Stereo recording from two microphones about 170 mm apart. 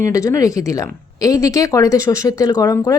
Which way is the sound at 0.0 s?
20° left (ahead or behind).